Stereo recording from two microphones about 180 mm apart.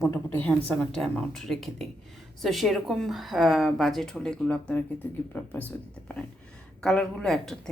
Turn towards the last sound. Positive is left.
turn(degrees=0)  # may be behind; listen again after turning